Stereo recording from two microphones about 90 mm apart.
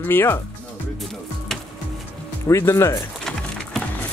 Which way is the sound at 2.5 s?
35° left (ahead or behind).